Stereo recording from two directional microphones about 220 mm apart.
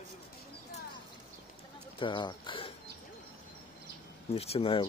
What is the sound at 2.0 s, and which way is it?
Speech, 20° left (ahead or behind).